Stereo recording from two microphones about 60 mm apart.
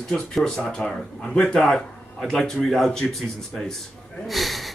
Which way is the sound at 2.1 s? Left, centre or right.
Centre.